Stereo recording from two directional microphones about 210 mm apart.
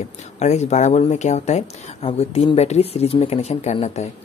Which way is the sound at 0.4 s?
30° left (ahead or behind).